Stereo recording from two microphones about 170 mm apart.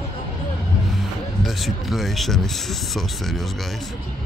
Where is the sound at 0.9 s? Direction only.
Centre (ahead or behind).